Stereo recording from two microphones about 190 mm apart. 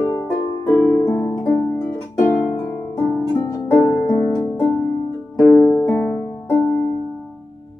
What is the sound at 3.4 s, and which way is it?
Harp, 20° left (ahead or behind).